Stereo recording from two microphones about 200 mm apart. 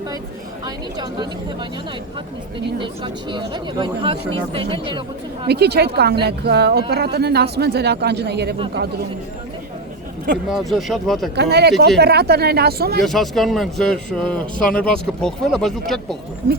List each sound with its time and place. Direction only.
0.6 s speech: 20° right (ahead or behind)
2.7 s speech: 25° right (ahead or behind)
5.5 s speech: 55° right (ahead or behind)
10.5 s a man's voice: centre (ahead or behind)
11.3 s speech: 55° right (ahead or behind)
13.0 s a man's voice: centre (ahead or behind)